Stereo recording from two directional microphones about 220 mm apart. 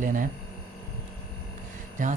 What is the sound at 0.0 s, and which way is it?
Speech, 35° right (ahead or behind).